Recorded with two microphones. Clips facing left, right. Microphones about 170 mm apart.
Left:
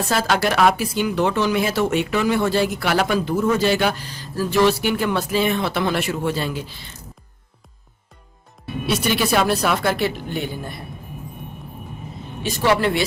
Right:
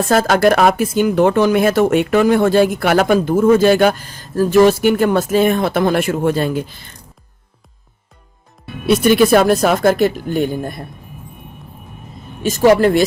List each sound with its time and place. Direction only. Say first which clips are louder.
0.0 s speech: right 7 dB; 50° right (ahead or behind)
8.9 s speech: right 10 dB; 50° right (ahead or behind)
12.4 s speech: right 8 dB; 45° right (ahead or behind)